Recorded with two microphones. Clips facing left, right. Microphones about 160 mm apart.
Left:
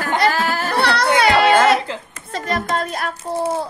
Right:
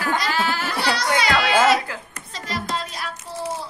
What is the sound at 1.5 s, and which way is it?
Baby cry, 55° left (ahead or behind).